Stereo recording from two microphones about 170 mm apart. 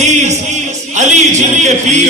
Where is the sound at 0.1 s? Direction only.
45° right (ahead or behind).